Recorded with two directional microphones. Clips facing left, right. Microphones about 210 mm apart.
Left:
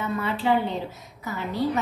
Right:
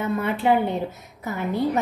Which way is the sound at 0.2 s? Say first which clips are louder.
Right 2 dB; 55° right (ahead or behind).